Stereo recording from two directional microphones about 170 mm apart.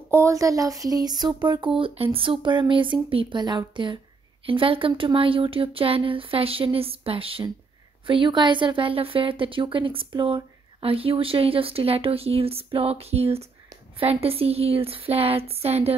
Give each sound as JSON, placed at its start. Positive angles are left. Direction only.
{"t": 0.1, "sound": "a woman's voice", "side_deg": -15}